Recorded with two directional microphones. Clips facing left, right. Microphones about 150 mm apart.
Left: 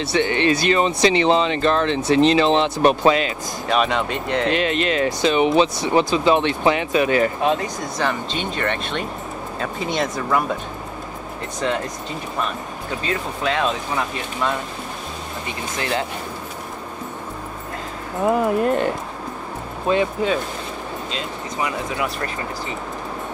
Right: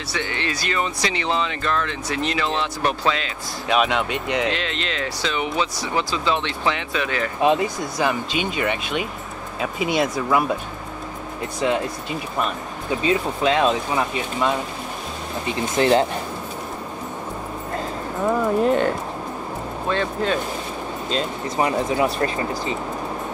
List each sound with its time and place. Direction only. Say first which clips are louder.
0.0 s speech: left 8 dB; 25° left (ahead or behind)
3.6 s speech: even; centre (ahead or behind)
4.6 s speech: left 7 dB; 20° left (ahead or behind)
7.4 s speech: right 2 dB; 10° right (ahead or behind)
11.6 s speech: right 2 dB; 10° right (ahead or behind)
13.0 s speech: right 4 dB; 20° right (ahead or behind)
15.8 s speech: right 8 dB; 30° right (ahead or behind)
18.6 s speech: right 1 dB; centre (ahead or behind)
19.9 s speech: left 4 dB; 10° left (ahead or behind)
21.1 s speech: right 4 dB; 35° right (ahead or behind)